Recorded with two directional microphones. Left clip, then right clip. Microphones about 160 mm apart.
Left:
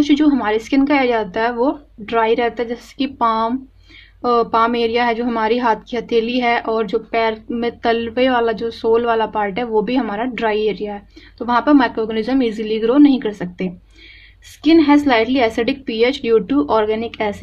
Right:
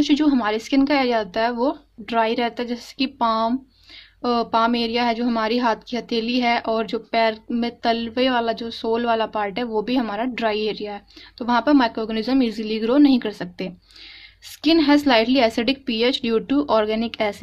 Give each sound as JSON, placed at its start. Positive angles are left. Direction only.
{"t": 0.0, "sound": "a woman's voice", "side_deg": -30}